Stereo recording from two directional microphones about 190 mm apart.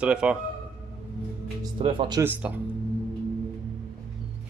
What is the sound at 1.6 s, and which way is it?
Speech, 25° right (ahead or behind).